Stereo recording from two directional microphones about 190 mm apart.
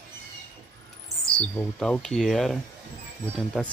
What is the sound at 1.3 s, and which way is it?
Speech, 10° left (ahead or behind).